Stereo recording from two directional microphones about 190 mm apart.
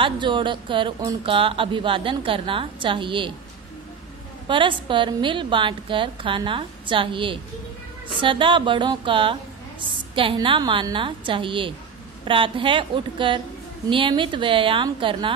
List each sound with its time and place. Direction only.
0.0 s a woman's voice: 25° right (ahead or behind)
4.5 s a woman's voice: 25° right (ahead or behind)